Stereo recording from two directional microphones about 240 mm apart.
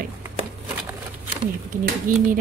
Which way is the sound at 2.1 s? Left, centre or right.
Right.